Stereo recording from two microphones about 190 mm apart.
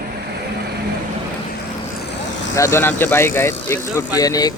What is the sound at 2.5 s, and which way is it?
Speech, 15° left (ahead or behind).